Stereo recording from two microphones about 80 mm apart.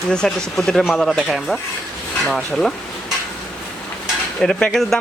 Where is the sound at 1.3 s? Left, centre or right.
Centre.